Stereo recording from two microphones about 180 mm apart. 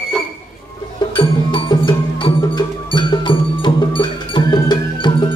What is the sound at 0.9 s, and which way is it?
Music, 25° left (ahead or behind).